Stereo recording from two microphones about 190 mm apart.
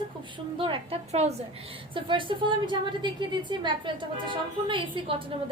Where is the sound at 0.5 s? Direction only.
30° right (ahead or behind).